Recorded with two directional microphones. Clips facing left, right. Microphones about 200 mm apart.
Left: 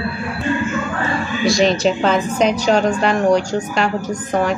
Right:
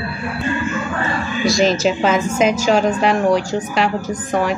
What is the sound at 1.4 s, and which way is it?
A woman's voice, centre (ahead or behind).